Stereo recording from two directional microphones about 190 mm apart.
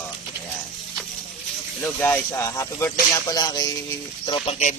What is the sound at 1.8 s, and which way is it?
Speech, 10° left (ahead or behind).